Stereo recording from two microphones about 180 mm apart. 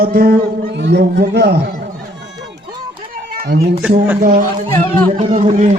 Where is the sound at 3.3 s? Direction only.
60° right (ahead or behind).